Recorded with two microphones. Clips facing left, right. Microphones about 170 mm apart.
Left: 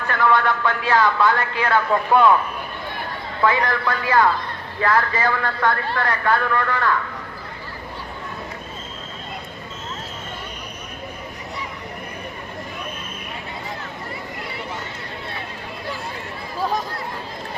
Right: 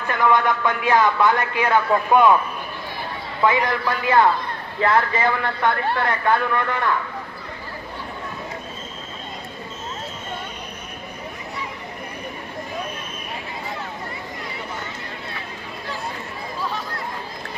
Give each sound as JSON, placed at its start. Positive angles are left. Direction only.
{"t": 0.1, "sound": "a man's voice", "side_deg": -15}
{"t": 3.4, "sound": "a man's voice", "side_deg": -20}